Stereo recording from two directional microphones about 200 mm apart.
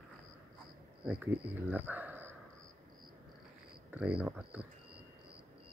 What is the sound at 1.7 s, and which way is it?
Speech, 10° right (ahead or behind).